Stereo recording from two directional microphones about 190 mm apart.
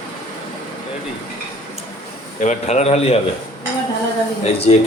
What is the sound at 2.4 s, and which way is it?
Speech, 40° left (ahead or behind).